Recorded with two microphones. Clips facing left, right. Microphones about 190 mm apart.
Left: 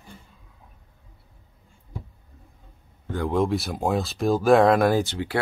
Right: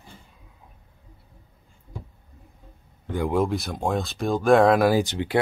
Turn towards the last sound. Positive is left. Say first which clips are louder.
# right 3 dB
turn(degrees=-15)  # may be behind; listen again after turning